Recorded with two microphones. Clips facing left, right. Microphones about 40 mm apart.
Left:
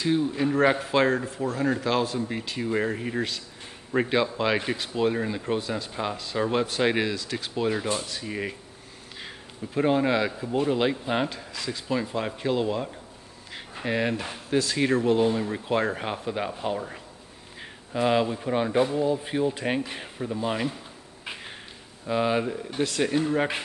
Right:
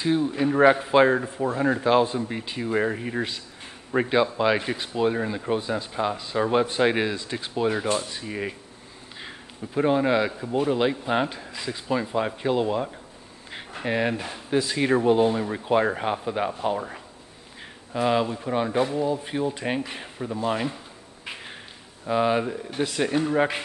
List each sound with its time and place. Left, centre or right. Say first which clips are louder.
0.0 s speech: right 1 dB; centre
2.1 s speech: right 1 dB; centre
7.2 s speech: right 2 dB; right
8.3 s speech: right 1 dB; centre
11.2 s speech: right 1 dB; centre
11.9 s speech: right 3 dB; centre
13.5 s a sound: right 2 dB; right
13.8 s speech: right 1 dB; centre
17.9 s speech: even; centre
22.0 s speech: right 2 dB; centre